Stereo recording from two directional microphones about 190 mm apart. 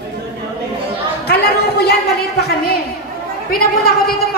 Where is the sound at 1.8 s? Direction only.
55° left (ahead or behind).